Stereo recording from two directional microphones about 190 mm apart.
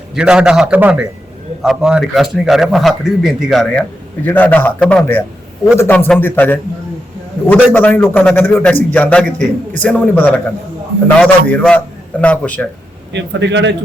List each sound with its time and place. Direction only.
0.2 s a man's voice: 5° right (ahead or behind)
13.1 s a man's voice: 70° right (ahead or behind)